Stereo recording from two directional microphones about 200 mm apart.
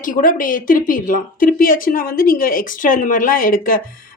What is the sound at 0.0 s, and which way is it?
Speech, 45° left (ahead or behind).